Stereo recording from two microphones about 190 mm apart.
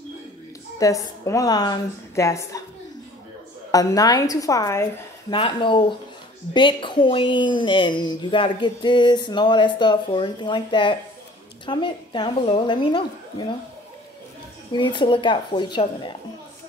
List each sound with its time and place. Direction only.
0.7 s a woman's voice: 15° left (ahead or behind)
3.7 s a woman's voice: 20° left (ahead or behind)
5.3 s speech: 25° left (ahead or behind)
14.7 s speech: 25° left (ahead or behind)